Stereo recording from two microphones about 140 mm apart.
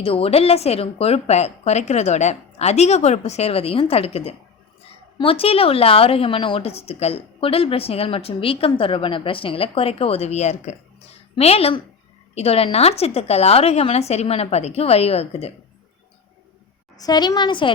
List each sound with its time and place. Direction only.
0.0 s a woman's voice: 45° left (ahead or behind)
17.0 s a woman's voice: 30° left (ahead or behind)